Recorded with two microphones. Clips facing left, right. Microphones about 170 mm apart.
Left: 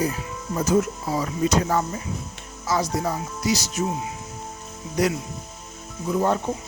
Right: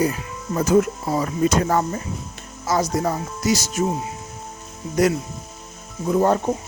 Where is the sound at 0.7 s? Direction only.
60° right (ahead or behind).